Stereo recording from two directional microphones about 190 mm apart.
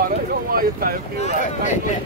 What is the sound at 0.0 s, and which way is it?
Speech, 50° right (ahead or behind).